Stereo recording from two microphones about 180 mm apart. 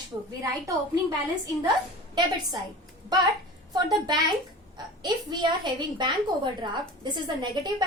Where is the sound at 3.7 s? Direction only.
25° right (ahead or behind).